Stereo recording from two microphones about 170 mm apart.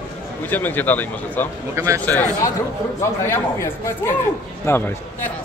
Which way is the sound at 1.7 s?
15° right (ahead or behind).